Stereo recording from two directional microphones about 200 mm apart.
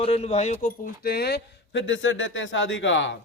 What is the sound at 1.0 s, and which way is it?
A man's voice, 55° left (ahead or behind).